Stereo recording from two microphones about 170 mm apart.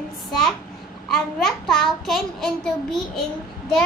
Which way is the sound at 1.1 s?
Centre (ahead or behind).